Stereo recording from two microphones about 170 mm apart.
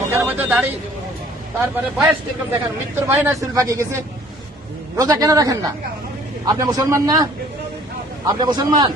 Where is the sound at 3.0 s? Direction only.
15° right (ahead or behind).